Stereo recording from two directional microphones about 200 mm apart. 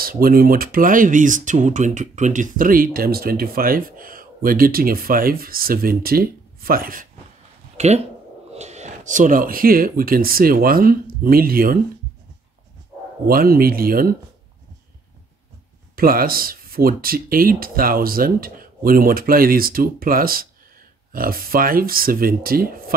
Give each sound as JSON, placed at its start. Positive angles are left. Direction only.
{"t": 0.0, "sound": "speech", "side_deg": -45}
{"t": 7.7, "sound": "a sound", "side_deg": -35}
{"t": 8.5, "sound": "speech", "side_deg": -35}
{"t": 13.3, "sound": "speech", "side_deg": -50}
{"t": 16.0, "sound": "speech", "side_deg": -45}